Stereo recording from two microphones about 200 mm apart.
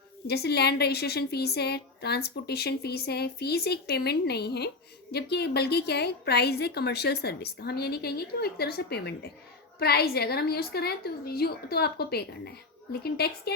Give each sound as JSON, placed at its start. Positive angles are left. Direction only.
{"t": 0.3, "sound": "a woman's voice", "side_deg": 55}